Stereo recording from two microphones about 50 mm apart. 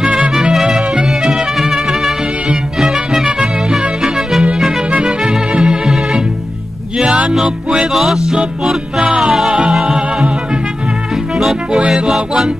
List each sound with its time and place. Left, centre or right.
0.0 s music: centre
1.3 s trumpet: centre
2.8 s music: centre
7.9 s music: centre
9.5 s music: right
9.8 s music: centre
11.3 s music: centre